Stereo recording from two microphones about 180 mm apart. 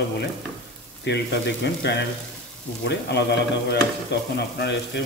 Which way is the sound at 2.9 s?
70° left (ahead or behind).